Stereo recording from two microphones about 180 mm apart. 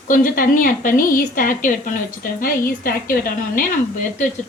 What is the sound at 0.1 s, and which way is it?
Speech, 50° left (ahead or behind).